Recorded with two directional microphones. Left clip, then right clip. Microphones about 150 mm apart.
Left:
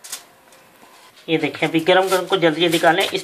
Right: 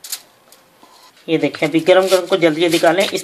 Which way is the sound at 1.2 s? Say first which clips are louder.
Right 3 dB; 80° right.